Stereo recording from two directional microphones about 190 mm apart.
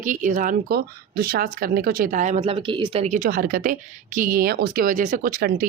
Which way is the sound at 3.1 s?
50° right (ahead or behind).